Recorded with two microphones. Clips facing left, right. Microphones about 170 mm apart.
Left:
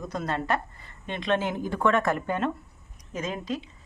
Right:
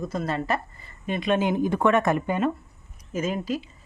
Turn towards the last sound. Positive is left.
turn(degrees=-5)  # may be behind; listen again after turning